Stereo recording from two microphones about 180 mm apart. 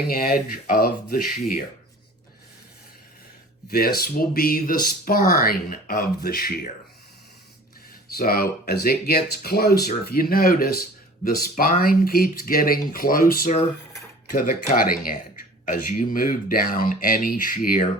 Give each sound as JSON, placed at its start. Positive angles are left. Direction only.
{"t": 0.1, "sound": "speech", "side_deg": 50}
{"t": 3.7, "sound": "speech", "side_deg": 60}
{"t": 8.1, "sound": "speech", "side_deg": 55}